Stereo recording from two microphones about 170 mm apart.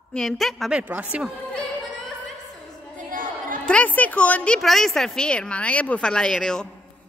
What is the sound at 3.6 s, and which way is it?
A woman's voice, 10° left (ahead or behind).